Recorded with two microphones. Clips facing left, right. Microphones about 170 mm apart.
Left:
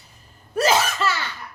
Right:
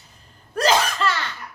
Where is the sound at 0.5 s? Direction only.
5° left (ahead or behind).